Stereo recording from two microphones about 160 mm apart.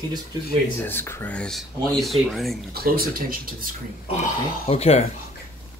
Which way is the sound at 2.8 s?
70° right (ahead or behind).